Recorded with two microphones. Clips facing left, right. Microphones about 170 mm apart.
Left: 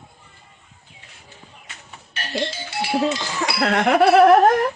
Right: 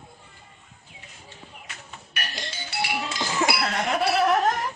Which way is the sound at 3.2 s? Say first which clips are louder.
Right 1 dB; 20° right (ahead or behind).